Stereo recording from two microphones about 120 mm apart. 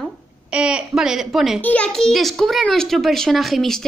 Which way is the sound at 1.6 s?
10° left (ahead or behind).